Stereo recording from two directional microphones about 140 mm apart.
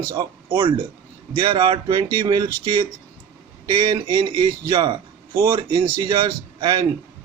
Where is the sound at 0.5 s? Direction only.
40° right (ahead or behind).